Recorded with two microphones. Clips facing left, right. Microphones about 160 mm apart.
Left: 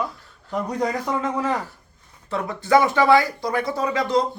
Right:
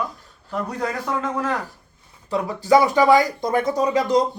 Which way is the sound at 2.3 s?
10° right (ahead or behind).